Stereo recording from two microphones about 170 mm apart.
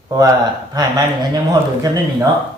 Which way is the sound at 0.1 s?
20° right (ahead or behind).